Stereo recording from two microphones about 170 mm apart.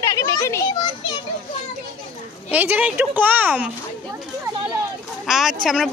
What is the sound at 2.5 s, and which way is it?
Speech, 10° right (ahead or behind).